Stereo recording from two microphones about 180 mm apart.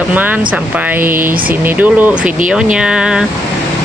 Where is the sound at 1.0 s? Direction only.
50° right (ahead or behind).